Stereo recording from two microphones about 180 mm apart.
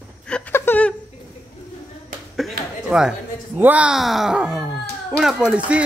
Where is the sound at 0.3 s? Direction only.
10° left (ahead or behind).